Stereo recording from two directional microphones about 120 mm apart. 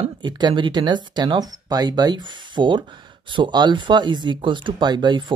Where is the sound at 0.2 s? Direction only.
35° right (ahead or behind).